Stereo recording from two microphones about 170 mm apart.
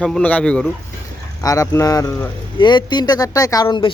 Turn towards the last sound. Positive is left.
turn(degrees=25)  # may be behind; listen again after turning